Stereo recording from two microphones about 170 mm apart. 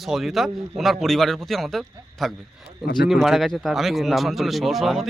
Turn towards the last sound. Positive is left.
turn(degrees=0)  # may be behind; listen again after turning